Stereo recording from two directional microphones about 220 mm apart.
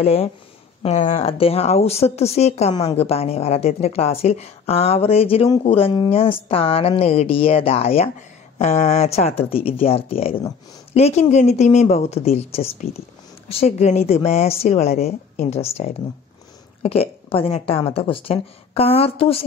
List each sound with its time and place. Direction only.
0.0 s speech: 25° left (ahead or behind)